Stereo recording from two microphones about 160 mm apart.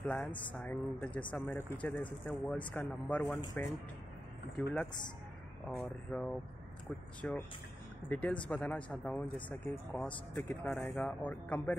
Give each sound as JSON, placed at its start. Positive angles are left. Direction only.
{"t": 0.0, "sound": "speech", "side_deg": 5}
{"t": 5.7, "sound": "speech", "side_deg": 5}
{"t": 7.2, "sound": "speech", "side_deg": 15}